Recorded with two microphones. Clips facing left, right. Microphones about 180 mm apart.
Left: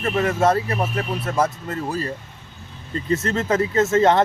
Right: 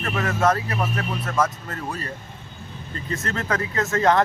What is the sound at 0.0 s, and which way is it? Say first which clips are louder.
Speech: left 3 dB; 25° left (ahead or behind).